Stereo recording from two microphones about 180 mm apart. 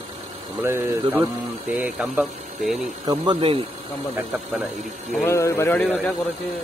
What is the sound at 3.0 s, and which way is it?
Music, 25° right (ahead or behind).